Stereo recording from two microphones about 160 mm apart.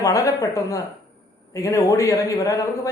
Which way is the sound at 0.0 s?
20° left (ahead or behind).